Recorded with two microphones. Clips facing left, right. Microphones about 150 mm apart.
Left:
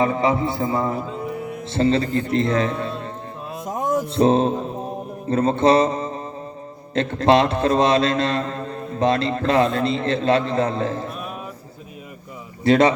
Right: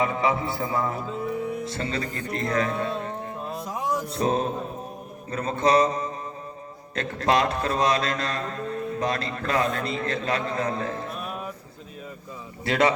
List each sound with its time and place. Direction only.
0.0 s a man's voice: 30° left (ahead or behind)
3.7 s a sound: 50° left (ahead or behind)
4.1 s a man's voice: 25° left (ahead or behind)
12.6 s a man's voice: 25° left (ahead or behind)